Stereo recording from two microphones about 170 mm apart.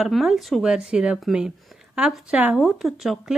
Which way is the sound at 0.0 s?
Centre (ahead or behind).